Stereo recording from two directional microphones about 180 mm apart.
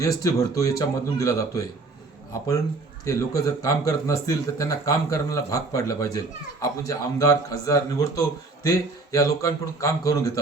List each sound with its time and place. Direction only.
0.0 s a man's voice: 20° left (ahead or behind)
3.0 s a man's voice: 20° left (ahead or behind)